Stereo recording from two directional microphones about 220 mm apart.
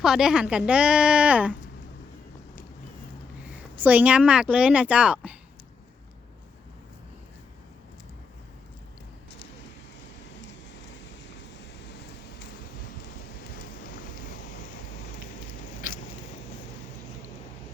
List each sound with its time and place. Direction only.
0.0 s speech: 5° right (ahead or behind)
3.5 s speech: 5° right (ahead or behind)
10.9 s vehicle: 55° left (ahead or behind)